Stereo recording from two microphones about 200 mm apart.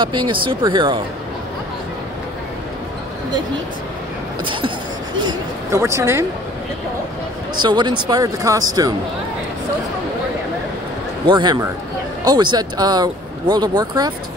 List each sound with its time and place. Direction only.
0.0 s speech: 25° right (ahead or behind)
4.5 s speech: 25° right (ahead or behind)
7.6 s speech: 20° right (ahead or behind)
11.2 s speech: 20° right (ahead or behind)